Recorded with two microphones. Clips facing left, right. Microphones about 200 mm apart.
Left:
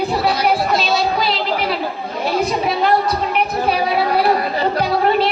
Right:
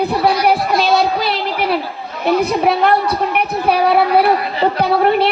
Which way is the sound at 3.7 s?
60° right (ahead or behind).